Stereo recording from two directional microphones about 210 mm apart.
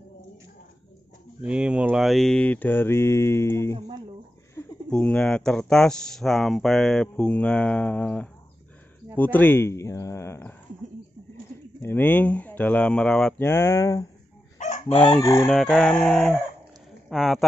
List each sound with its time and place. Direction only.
1.4 s mantra: 5° right (ahead or behind); by 3.7 s 15° left (ahead or behind)
4.8 s speech: 5° left (ahead or behind)
9.1 s mantra: 10° left (ahead or behind)
11.8 s mantra: 10° left (ahead or behind)
14.6 s chicken: 35° left (ahead or behind)
15.4 s speech: centre (ahead or behind)